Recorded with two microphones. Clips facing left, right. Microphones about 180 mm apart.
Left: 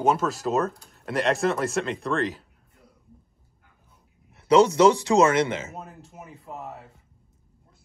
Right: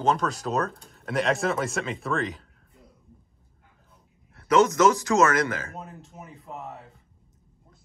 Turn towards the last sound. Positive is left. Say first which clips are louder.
# left 1 dB
turn(degrees=0)  # may be behind; listen again after turning